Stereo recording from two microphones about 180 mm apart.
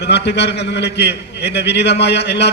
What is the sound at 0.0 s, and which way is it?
A man's voice, 70° left (ahead or behind).